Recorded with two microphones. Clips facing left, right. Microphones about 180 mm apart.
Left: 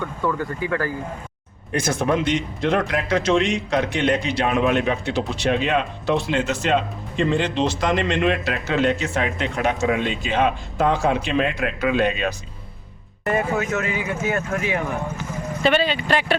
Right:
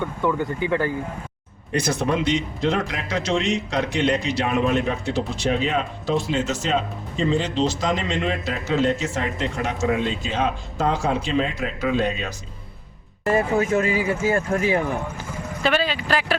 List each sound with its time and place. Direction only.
0.0 s speech: 20° right (ahead or behind)
1.7 s speech: 50° left (ahead or behind)
13.2 s speech: 30° right (ahead or behind)
15.6 s speech: centre (ahead or behind)